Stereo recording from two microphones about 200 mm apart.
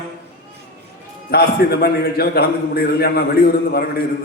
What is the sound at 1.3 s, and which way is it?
A man's voice, 50° left (ahead or behind).